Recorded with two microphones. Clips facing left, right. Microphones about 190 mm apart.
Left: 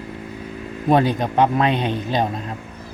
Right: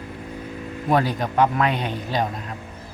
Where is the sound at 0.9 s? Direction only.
20° left (ahead or behind).